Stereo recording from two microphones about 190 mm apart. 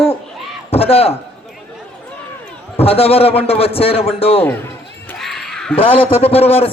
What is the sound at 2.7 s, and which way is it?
A man's voice, 30° left (ahead or behind).